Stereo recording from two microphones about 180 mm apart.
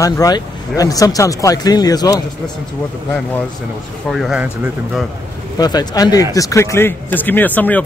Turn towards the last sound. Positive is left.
turn(degrees=10)  # may be behind; listen again after turning